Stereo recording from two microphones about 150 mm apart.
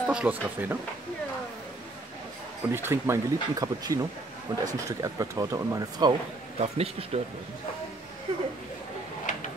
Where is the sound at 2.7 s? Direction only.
15° right (ahead or behind).